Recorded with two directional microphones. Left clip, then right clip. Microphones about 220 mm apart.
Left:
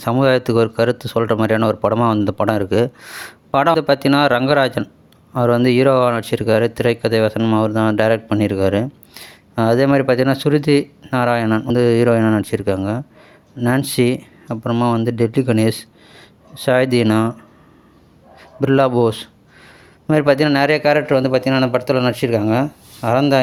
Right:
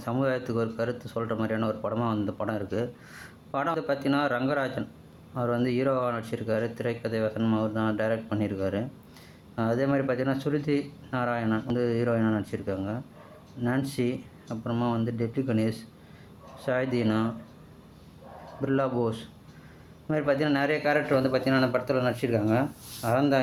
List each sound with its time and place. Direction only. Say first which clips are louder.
0.0 s speech: left 13 dB; 45° left (ahead or behind)
18.6 s speech: left 13 dB; 45° left (ahead or behind)